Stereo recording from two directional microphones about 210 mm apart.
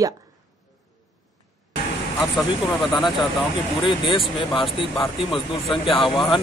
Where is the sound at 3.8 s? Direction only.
25° left (ahead or behind).